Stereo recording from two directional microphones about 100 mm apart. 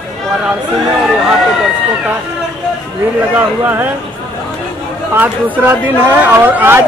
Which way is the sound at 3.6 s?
20° right (ahead or behind).